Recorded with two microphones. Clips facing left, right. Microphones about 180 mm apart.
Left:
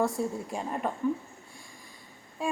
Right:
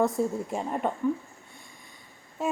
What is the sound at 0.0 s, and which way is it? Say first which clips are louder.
Speech: right 3 dB; 20° right (ahead or behind).